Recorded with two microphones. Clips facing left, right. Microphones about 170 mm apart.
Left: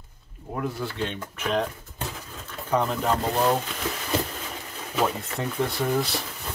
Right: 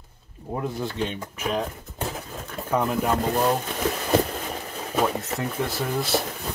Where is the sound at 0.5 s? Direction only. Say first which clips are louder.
Right 1 dB; 20° right (ahead or behind).